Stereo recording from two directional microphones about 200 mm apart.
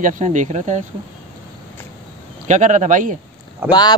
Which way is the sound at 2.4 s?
35° right (ahead or behind).